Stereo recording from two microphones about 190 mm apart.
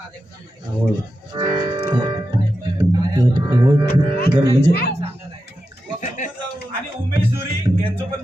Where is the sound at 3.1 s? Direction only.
20° right (ahead or behind).